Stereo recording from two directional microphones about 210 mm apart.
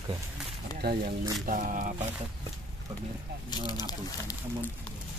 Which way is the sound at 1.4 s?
40° right (ahead or behind).